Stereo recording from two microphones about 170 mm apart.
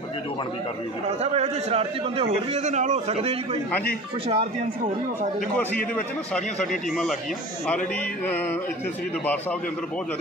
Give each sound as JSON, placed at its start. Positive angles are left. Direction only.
{"t": 1.2, "sound": "a man's voice", "side_deg": -35}
{"t": 6.3, "sound": "speech", "side_deg": 0}
{"t": 8.3, "sound": "a man's voice", "side_deg": 10}